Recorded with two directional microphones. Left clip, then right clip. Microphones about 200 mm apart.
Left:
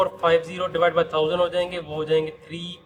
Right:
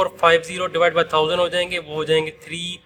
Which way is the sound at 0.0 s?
35° right (ahead or behind).